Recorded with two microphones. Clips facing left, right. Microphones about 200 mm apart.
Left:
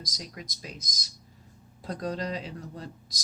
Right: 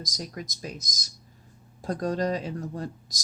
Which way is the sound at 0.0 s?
45° right (ahead or behind).